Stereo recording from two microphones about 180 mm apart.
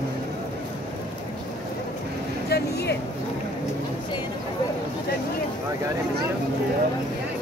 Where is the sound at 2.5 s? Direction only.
65° left (ahead or behind).